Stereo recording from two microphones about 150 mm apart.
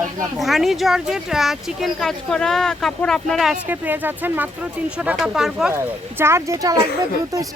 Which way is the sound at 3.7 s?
10° right (ahead or behind).